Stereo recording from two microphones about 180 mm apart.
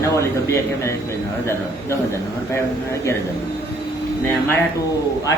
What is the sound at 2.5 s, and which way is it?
Speech, 15° left (ahead or behind).